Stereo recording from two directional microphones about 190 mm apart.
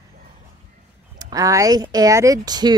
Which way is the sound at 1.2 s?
20° right (ahead or behind).